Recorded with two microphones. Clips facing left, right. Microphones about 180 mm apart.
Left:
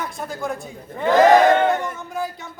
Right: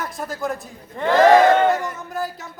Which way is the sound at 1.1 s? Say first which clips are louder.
Even; 15° left (ahead or behind).